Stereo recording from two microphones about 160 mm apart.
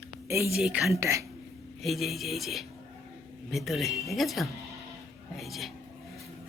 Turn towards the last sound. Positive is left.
turn(degrees=0)  # may be behind; listen again after turning